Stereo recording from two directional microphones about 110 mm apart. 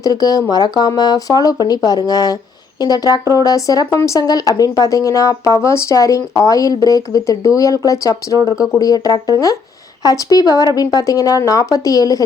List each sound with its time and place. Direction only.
0.0 s speech: 35° left (ahead or behind)